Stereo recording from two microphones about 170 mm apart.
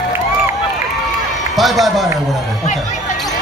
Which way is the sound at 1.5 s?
Centre (ahead or behind).